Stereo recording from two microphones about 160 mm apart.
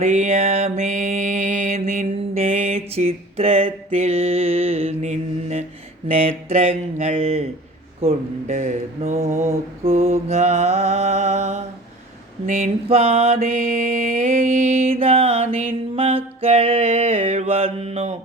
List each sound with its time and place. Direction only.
0.0 s music: 45° right (ahead or behind)
6.1 s speech: 35° right (ahead or behind)
9.8 s mantra: 40° right (ahead or behind)
12.5 s speech: 50° right (ahead or behind)
13.4 s mantra: 55° right (ahead or behind)